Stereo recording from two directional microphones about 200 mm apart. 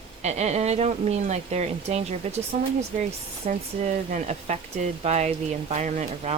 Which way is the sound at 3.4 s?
35° right (ahead or behind).